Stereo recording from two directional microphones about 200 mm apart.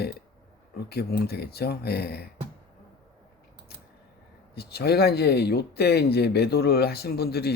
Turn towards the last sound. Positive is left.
turn(degrees=50)  # may be behind; listen again after turning